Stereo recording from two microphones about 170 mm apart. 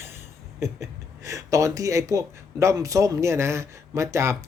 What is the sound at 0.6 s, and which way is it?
Speech, 20° right (ahead or behind).